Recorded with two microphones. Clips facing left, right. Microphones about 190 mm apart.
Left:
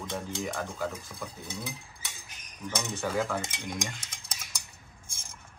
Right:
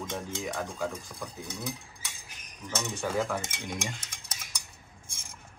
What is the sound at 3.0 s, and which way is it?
Stir, centre (ahead or behind).